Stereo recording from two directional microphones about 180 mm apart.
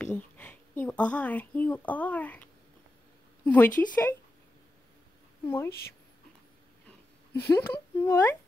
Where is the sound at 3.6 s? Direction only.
50° left (ahead or behind).